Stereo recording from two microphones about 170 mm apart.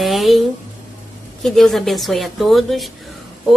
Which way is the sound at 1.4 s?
Centre (ahead or behind).